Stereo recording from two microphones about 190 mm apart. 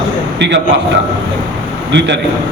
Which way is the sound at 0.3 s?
65° right (ahead or behind).